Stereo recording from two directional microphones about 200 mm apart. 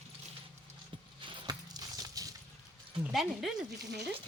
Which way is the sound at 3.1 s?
Centre (ahead or behind).